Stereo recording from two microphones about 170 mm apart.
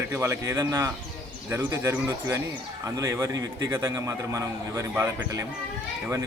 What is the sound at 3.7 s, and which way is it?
Music, 15° right (ahead or behind).